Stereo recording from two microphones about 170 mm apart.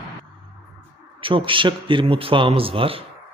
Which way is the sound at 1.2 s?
30° right (ahead or behind).